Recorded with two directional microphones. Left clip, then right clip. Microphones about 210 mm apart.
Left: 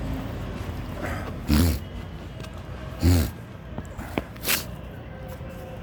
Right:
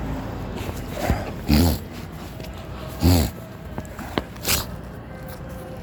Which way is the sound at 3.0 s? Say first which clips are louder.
Right 4 dB; 20° right (ahead or behind).